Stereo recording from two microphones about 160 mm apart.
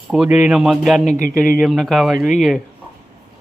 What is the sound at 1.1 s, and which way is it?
Speech, 60° left (ahead or behind).